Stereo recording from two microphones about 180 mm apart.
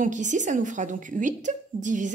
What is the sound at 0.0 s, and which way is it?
A woman's voice, 45° right (ahead or behind).